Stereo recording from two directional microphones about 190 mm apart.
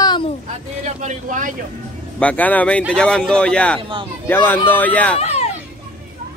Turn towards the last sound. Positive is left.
turn(degrees=35)  # may be behind; listen again after turning